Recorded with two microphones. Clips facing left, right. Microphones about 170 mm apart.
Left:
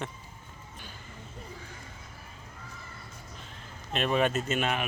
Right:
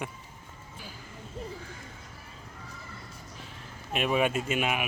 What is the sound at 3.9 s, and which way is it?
Speech, 10° right (ahead or behind).